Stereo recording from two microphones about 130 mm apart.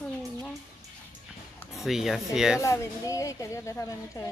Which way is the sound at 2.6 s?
20° left (ahead or behind).